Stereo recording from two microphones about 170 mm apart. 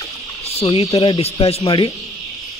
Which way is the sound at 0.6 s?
35° left (ahead or behind).